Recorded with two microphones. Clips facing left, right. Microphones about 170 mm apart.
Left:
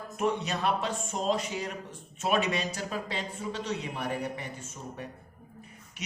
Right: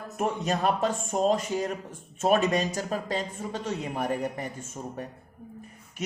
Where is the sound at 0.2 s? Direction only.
45° right (ahead or behind).